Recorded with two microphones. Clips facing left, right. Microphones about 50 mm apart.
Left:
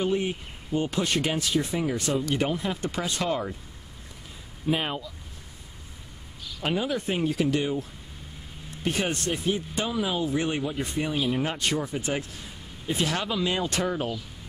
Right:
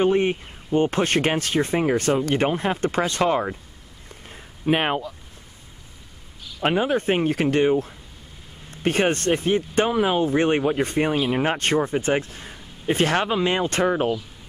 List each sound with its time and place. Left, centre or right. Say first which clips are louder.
0.0 s speech: right 7 dB; right
4.3 s a sound: right 5 dB; right
6.6 s speech: right 7 dB; right